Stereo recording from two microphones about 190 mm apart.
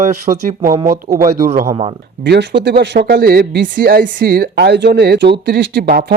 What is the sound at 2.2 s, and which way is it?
Speech, 65° right (ahead or behind).